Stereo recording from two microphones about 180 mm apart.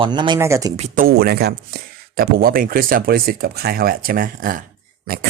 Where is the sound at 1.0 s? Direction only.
60° right (ahead or behind).